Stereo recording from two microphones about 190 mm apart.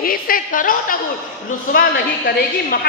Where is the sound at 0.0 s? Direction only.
50° left (ahead or behind).